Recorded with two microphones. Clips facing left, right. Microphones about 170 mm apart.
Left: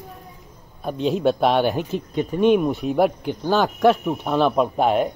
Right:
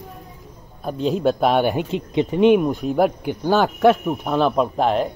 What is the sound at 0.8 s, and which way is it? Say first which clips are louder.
Speech: even; centre (ahead or behind).